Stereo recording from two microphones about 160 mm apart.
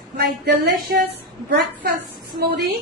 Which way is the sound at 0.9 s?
80° right.